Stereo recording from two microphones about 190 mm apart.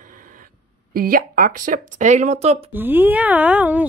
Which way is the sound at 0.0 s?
45° right (ahead or behind).